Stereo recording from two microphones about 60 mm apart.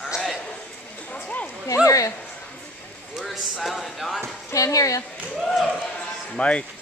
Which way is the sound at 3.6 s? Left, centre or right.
Centre.